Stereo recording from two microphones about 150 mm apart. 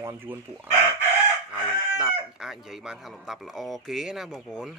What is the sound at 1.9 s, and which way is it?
Speech, 5° right (ahead or behind).